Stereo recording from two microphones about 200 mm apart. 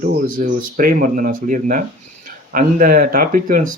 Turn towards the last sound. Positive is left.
turn(degrees=-45)  # may be behind; listen again after turning